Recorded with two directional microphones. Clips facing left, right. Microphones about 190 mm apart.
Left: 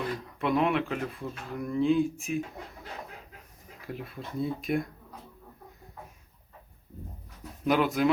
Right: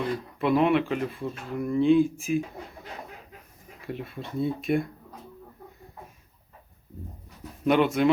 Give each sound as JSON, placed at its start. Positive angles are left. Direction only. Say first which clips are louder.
{"t": 0.3, "sound": "speech", "louder": "right 4 dB", "side_deg": 0}
{"t": 3.8, "sound": "speech", "louder": "right 4 dB", "side_deg": 0}
{"t": 7.6, "sound": "speech", "louder": "right 3 dB", "side_deg": 0}